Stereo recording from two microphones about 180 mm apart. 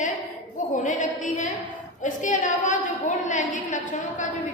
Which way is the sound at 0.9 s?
45° left (ahead or behind).